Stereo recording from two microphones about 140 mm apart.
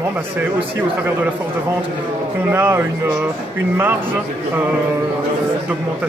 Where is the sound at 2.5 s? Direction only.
15° right (ahead or behind).